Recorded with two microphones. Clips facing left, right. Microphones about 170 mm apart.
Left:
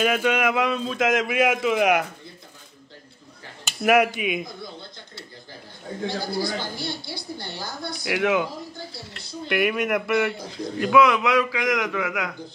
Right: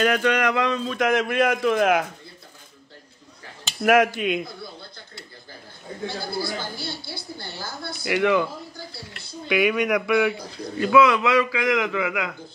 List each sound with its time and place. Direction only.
0.0 s a man's voice: 10° left (ahead or behind)
3.8 s speech: 5° left (ahead or behind)
6.0 s a woman's voice: 20° left (ahead or behind)
7.9 s a man's voice: centre (ahead or behind)
9.5 s a man's voice: centre (ahead or behind)